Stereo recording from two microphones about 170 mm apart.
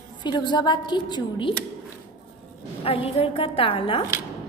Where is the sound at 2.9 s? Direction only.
35° left (ahead or behind).